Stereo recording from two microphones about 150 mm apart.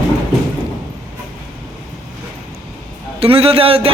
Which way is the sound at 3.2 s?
40° right (ahead or behind).